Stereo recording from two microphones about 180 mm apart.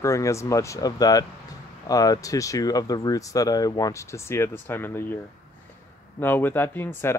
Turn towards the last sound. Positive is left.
turn(degrees=10)  # may be behind; listen again after turning